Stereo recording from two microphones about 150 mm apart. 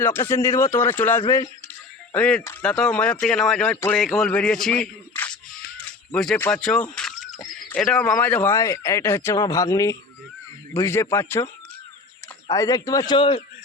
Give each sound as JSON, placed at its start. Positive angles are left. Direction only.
{"t": 0.0, "sound": "a man's voice", "side_deg": 15}
{"t": 2.1, "sound": "a man's voice", "side_deg": 5}
{"t": 2.6, "sound": "speech", "side_deg": 5}
{"t": 12.5, "sound": "speech", "side_deg": 25}